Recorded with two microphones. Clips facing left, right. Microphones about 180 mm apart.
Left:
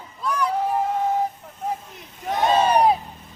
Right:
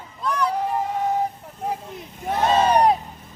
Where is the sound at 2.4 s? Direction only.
15° left (ahead or behind).